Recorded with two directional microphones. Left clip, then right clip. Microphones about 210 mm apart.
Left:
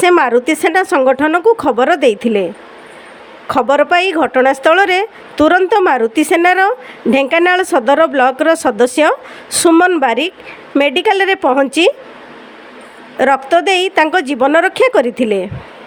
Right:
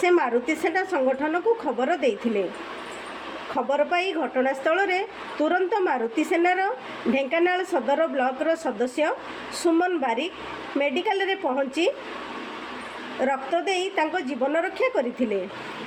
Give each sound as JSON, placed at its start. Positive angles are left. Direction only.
{"t": 0.0, "sound": "speech", "side_deg": 45}
{"t": 3.5, "sound": "speech", "side_deg": 50}
{"t": 13.1, "sound": "speech", "side_deg": 50}